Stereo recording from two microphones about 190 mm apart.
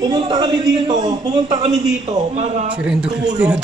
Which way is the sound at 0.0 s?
20° right (ahead or behind).